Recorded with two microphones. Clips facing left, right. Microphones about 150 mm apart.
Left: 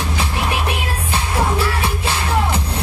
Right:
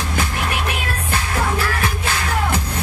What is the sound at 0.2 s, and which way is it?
Music, 30° left (ahead or behind).